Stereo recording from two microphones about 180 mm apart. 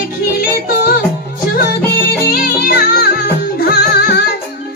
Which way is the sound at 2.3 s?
55° left (ahead or behind).